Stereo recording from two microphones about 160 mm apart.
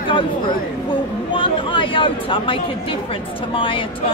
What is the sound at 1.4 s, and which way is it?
A woman's voice, 30° left (ahead or behind).